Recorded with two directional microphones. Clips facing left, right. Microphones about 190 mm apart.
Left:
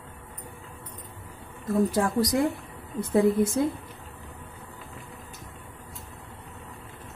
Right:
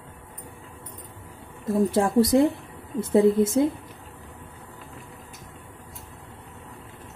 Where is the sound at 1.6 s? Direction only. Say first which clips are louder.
Right 2 dB; 25° right (ahead or behind).